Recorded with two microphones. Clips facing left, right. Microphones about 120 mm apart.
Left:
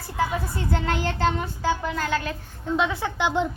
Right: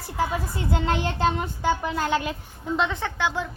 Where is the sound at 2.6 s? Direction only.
Centre (ahead or behind); by 3.5 s 20° left (ahead or behind).